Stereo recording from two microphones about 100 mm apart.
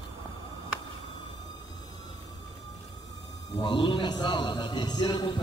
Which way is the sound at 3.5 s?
50° left (ahead or behind).